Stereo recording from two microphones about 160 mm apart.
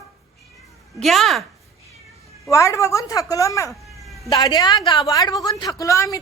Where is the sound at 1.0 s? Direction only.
Centre (ahead or behind).